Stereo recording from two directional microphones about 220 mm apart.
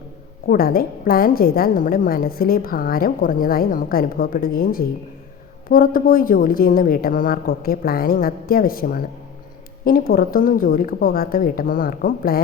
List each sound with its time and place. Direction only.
0.4 s a woman's voice: 40° left (ahead or behind)